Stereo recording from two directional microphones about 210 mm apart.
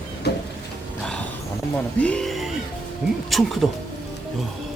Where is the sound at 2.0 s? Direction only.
5° left (ahead or behind).